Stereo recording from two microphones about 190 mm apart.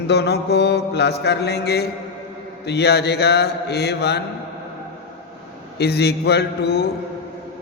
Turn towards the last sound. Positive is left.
turn(degrees=60)  # may be behind; listen again after turning